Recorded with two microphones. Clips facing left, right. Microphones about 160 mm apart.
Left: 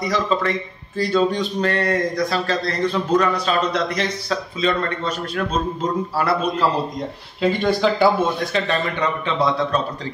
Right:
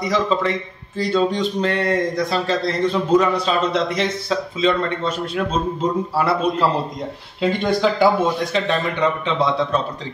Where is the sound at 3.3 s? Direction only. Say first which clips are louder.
Right 1 dB; 25° right (ahead or behind).